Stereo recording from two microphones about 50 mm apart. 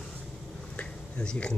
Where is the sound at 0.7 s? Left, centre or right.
Left.